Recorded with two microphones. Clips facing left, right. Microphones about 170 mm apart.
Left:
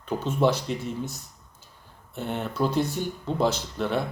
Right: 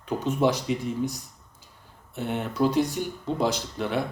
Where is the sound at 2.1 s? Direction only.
10° right (ahead or behind).